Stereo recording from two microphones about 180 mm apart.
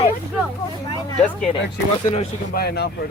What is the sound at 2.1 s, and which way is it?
Speech, 50° left (ahead or behind).